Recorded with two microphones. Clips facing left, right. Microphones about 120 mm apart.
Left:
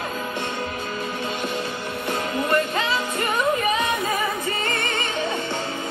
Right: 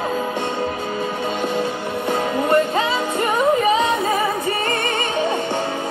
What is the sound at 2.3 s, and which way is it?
Music, 25° right (ahead or behind).